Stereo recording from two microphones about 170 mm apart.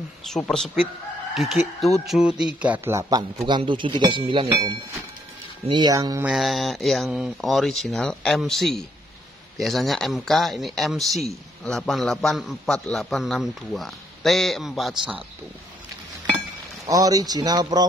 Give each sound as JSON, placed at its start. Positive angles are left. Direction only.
{"t": 0.2, "sound": "a man's voice", "side_deg": 0}
{"t": 1.3, "sound": "chicken", "side_deg": 0}
{"t": 2.0, "sound": "a man's voice", "side_deg": -5}
{"t": 6.2, "sound": "a man's voice", "side_deg": 0}
{"t": 16.8, "sound": "speech", "side_deg": -20}